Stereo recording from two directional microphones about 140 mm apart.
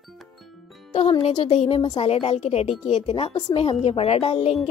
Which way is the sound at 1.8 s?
30° left (ahead or behind).